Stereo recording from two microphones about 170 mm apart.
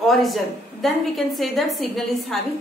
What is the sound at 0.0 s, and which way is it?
A woman's voice, centre (ahead or behind).